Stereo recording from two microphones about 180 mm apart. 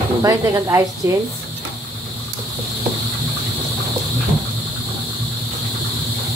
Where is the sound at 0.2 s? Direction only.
20° right (ahead or behind).